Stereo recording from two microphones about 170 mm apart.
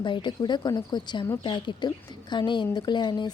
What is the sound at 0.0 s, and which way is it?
Speech, 25° left (ahead or behind).